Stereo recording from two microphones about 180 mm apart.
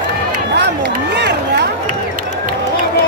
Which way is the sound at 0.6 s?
70° right (ahead or behind).